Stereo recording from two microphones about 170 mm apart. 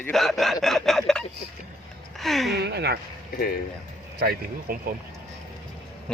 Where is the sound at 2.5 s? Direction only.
75° right (ahead or behind).